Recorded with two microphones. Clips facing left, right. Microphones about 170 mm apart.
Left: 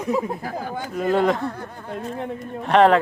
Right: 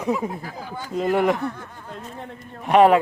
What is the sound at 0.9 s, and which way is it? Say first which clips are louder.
Speech: even; 20° right (ahead or behind).